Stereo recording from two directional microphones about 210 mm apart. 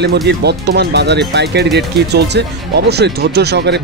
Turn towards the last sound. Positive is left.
turn(degrees=-55)  # may be behind; listen again after turning